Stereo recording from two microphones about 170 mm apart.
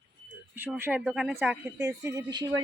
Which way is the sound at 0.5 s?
10° right (ahead or behind).